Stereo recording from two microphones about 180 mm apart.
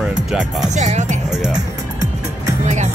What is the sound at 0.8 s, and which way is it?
Speech, 40° right (ahead or behind).